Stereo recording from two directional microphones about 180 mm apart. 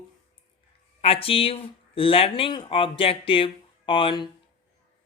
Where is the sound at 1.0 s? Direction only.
30° left (ahead or behind).